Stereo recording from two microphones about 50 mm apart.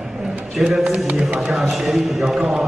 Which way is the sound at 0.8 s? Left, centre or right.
Right.